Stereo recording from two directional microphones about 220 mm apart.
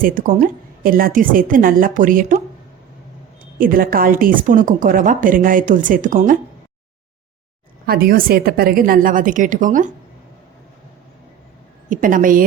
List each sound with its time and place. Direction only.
0.0 s a woman's voice: 40° right (ahead or behind)
3.6 s a woman's voice: 40° right (ahead or behind)
7.9 s a woman's voice: 45° right (ahead or behind)
11.9 s a woman's voice: 40° right (ahead or behind)